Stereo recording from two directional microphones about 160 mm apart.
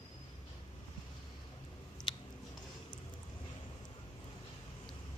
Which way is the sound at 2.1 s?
30° left (ahead or behind).